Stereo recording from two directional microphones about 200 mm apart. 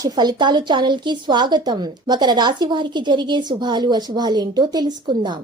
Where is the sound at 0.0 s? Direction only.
20° right (ahead or behind).